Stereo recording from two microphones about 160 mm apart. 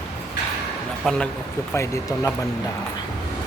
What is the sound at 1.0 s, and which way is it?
Speech, 5° left (ahead or behind).